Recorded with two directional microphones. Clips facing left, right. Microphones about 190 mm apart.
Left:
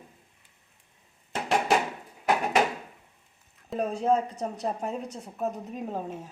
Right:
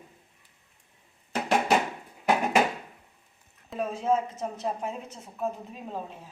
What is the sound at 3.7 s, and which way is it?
A woman's voice, 35° left (ahead or behind).